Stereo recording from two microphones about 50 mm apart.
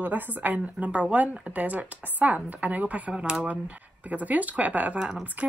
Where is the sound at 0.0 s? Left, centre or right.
Right; by 3.4 s centre.